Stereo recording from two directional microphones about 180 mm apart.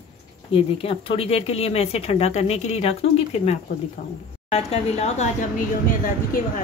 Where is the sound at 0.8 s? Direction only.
30° left (ahead or behind).